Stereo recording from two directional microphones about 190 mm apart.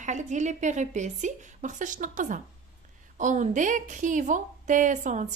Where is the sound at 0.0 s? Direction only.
40° right (ahead or behind).